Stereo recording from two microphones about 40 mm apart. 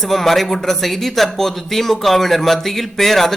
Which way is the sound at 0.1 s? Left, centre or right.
Centre.